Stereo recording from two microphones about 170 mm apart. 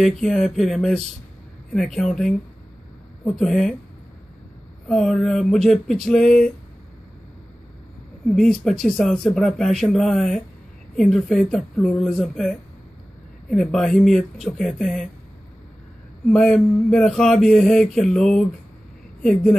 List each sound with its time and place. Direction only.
0.0 s speech: centre (ahead or behind)
4.8 s speech: 5° left (ahead or behind)
8.3 s speech: 5° left (ahead or behind)
16.3 s speech: 5° left (ahead or behind)